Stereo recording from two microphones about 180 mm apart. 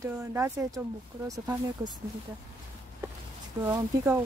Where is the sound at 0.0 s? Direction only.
15° right (ahead or behind).